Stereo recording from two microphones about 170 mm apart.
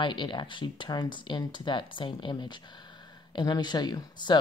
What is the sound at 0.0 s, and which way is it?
Speech, 30° left (ahead or behind).